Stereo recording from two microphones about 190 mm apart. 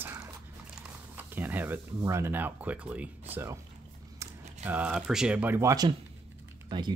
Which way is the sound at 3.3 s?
15° right (ahead or behind).